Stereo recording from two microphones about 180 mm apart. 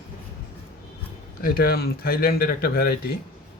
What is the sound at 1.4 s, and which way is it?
Speech, 55° left (ahead or behind).